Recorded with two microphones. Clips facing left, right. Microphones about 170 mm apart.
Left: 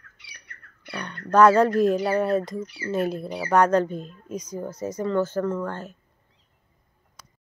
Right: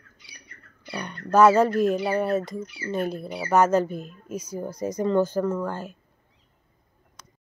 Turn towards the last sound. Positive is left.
turn(degrees=-10)  # may be behind; listen again after turning